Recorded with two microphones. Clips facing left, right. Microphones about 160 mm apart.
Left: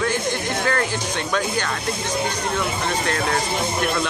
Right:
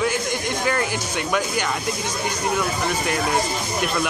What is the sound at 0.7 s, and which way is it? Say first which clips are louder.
Speech: even; 10° right (ahead or behind).